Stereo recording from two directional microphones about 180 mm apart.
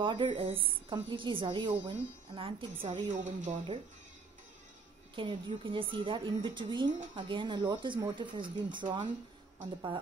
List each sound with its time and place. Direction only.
0.0 s a woman's voice: 25° right (ahead or behind); by 3.5 s 45° right (ahead or behind)
5.1 s a woman's voice: 30° right (ahead or behind)